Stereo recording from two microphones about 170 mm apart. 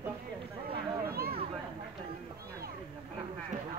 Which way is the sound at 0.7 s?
65° right (ahead or behind).